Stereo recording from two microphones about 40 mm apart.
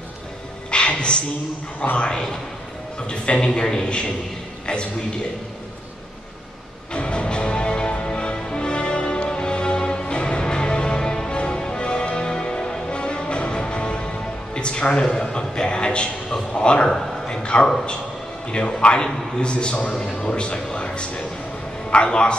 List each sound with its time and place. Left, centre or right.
0.7 s a sound: left
1.8 s a man's voice: left
6.9 s music: left
14.5 s a man's voice: left